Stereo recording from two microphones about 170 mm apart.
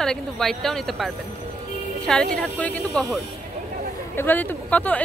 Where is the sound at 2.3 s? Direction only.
10° left (ahead or behind).